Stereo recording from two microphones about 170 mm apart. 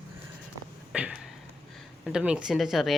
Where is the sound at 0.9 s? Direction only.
5° right (ahead or behind).